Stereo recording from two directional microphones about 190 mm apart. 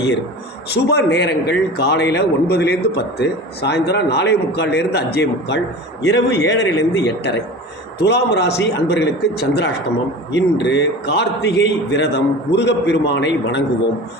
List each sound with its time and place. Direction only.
0.7 s a man's voice: 60° left (ahead or behind)